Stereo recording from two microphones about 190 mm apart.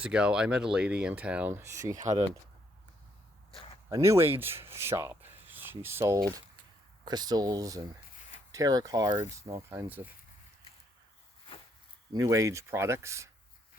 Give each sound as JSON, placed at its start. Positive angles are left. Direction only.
{"t": 0.0, "sound": "speech", "side_deg": -5}
{"t": 1.9, "sound": "speech", "side_deg": -40}
{"t": 3.8, "sound": "speech", "side_deg": -15}
{"t": 12.1, "sound": "speech", "side_deg": -15}